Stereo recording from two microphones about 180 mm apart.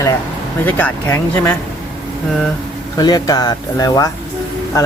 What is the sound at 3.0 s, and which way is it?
Speech, 20° left (ahead or behind).